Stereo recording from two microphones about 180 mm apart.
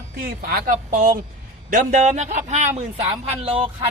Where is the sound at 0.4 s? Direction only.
50° right (ahead or behind); by 3.7 s 30° right (ahead or behind).